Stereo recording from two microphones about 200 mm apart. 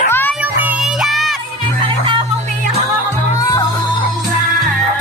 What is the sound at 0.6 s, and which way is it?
Child singing, 5° right (ahead or behind).